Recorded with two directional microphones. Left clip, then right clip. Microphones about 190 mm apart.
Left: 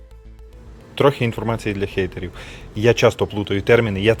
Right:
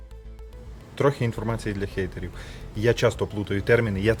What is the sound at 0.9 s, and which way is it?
Speech, 20° left (ahead or behind).